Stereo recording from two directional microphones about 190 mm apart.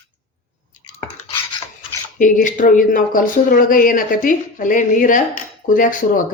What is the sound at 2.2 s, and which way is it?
Speech, 45° left (ahead or behind).